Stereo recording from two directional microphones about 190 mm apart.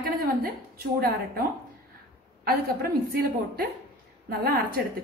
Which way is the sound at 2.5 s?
50° right (ahead or behind).